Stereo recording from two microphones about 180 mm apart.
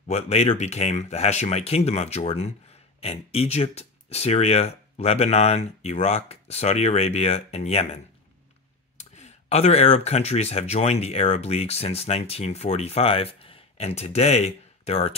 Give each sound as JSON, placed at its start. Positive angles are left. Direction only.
{"t": 0.1, "sound": "speech", "side_deg": 35}